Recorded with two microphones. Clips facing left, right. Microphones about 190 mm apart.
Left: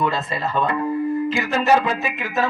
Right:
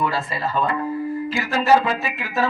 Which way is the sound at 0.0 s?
20° left (ahead or behind).